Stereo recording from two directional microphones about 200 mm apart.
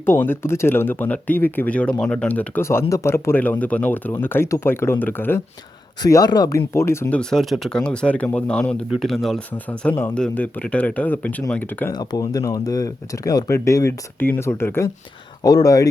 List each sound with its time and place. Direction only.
0.0 s speech: 10° left (ahead or behind)